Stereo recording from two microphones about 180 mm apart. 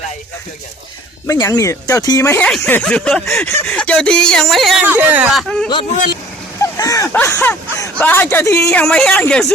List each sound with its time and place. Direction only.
1.3 s speech: 15° left (ahead or behind); by 5.6 s centre (ahead or behind)
6.6 s speech: 20° left (ahead or behind)